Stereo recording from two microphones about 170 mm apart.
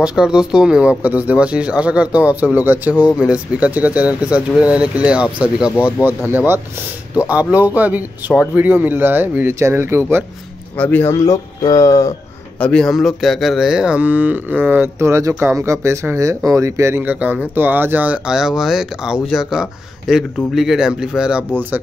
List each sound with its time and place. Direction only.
0.0 s speech: 5° right (ahead or behind)
10.8 s speech: 10° left (ahead or behind)
12.5 s speech: 5° left (ahead or behind)